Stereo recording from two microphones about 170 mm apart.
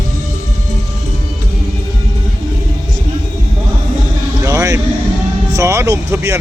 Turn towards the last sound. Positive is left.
turn(degrees=-15)  # may be behind; listen again after turning